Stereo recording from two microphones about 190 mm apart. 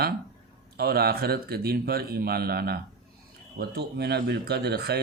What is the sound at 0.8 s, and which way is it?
A man's voice, 55° right (ahead or behind).